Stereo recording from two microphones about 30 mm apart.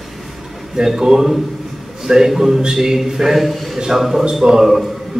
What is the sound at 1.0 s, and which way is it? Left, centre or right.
A man's voice, centre.